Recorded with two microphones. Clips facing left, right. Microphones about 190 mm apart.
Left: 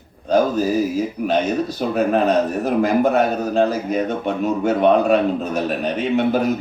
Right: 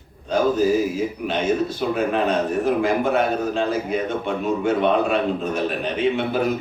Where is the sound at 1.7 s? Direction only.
40° left (ahead or behind).